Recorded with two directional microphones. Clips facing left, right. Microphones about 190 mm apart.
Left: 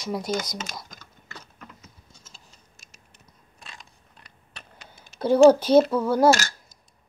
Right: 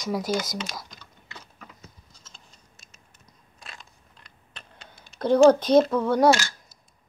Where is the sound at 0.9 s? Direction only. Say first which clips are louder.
Left 1 dB; 45° left (ahead or behind).